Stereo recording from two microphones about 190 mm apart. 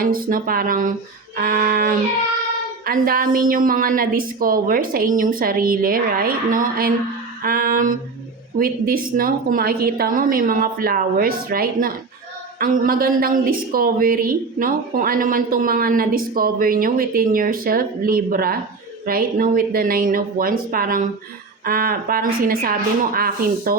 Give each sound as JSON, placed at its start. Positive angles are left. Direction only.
{"t": 0.0, "sound": "speech", "side_deg": -50}